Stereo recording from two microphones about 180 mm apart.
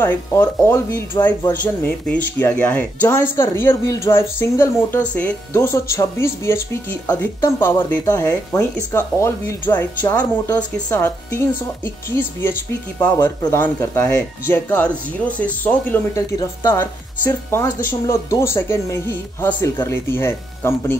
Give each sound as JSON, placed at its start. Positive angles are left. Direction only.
{"t": 0.0, "sound": "speech", "side_deg": 10}